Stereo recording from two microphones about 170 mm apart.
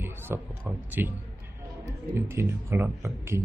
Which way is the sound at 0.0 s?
15° right (ahead or behind).